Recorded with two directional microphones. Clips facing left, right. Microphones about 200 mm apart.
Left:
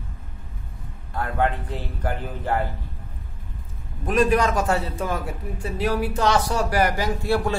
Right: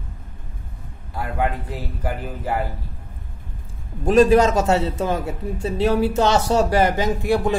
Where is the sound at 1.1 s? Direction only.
10° right (ahead or behind).